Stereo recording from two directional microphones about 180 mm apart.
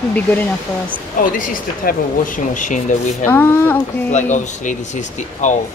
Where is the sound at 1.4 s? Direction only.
50° left (ahead or behind).